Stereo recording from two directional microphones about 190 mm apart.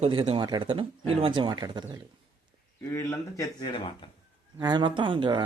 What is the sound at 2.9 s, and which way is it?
Speech, 15° left (ahead or behind).